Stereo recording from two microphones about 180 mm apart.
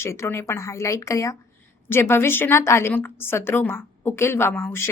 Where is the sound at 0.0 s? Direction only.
15° left (ahead or behind).